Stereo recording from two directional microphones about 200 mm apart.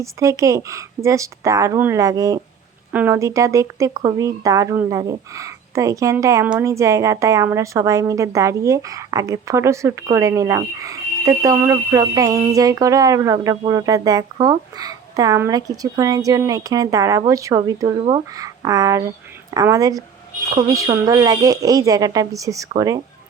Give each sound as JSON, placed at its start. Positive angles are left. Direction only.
{"t": 0.0, "sound": "a woman's voice", "side_deg": -15}